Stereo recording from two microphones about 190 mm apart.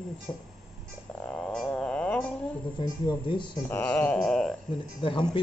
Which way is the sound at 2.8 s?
25° left (ahead or behind).